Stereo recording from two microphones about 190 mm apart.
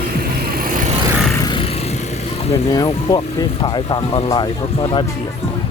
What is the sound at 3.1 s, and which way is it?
Speech, 25° left (ahead or behind).